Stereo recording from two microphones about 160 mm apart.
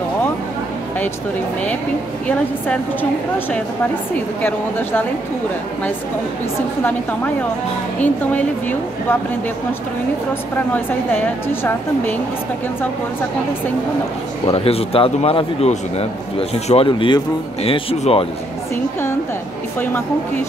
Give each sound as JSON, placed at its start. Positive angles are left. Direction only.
{"t": 2.2, "sound": "a woman's voice", "side_deg": 10}
{"t": 4.4, "sound": "a woman's voice", "side_deg": 10}
{"t": 8.0, "sound": "a woman's voice", "side_deg": 10}
{"t": 10.7, "sound": "a woman's voice", "side_deg": 10}
{"t": 14.5, "sound": "a man's voice", "side_deg": 35}